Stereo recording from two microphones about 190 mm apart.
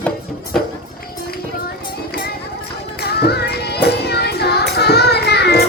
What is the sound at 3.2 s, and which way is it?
Music, 60° left (ahead or behind).